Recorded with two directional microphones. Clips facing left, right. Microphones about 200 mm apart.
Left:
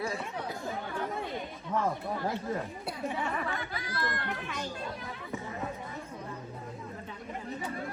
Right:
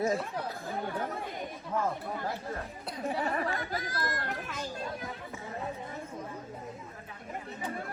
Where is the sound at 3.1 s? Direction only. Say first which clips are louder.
Right 4 dB; 35° right (ahead or behind).